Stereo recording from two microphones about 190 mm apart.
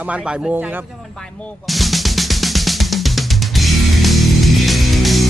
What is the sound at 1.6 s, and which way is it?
Drum kit, centre (ahead or behind).